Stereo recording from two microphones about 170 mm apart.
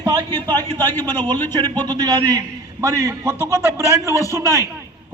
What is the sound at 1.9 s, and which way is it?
A man's voice, 25° right (ahead or behind).